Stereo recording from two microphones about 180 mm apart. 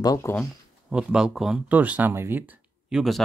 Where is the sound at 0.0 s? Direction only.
15° left (ahead or behind).